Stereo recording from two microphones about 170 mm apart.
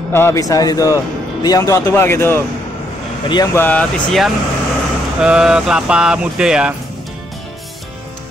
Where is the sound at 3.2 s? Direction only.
25° left (ahead or behind).